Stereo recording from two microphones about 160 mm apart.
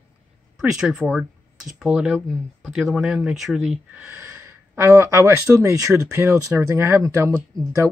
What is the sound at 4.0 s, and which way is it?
Speech, 15° right (ahead or behind).